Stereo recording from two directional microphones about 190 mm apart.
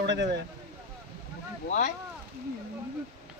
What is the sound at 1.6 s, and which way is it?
Speech, 40° left (ahead or behind).